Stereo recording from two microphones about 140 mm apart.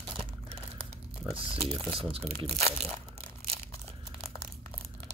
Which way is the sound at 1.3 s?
40° right (ahead or behind).